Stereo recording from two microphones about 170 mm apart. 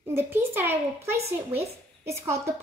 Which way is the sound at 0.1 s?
15° right (ahead or behind).